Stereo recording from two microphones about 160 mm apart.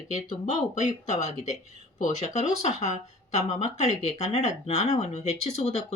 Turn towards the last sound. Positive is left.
turn(degrees=40)  # may be behind; listen again after turning